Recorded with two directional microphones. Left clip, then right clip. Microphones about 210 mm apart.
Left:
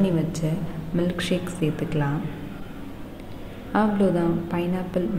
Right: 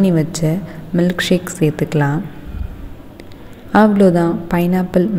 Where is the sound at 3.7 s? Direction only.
35° right (ahead or behind).